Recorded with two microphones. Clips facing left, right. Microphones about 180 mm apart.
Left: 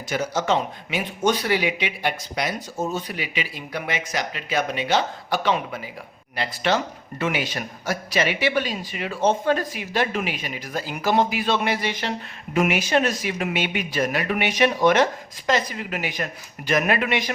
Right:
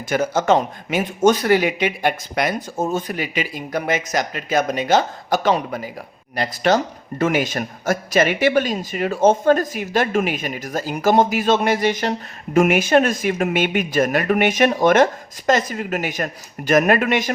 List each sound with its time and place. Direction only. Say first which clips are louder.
0.1 s speech: right 6 dB; 50° right (ahead or behind)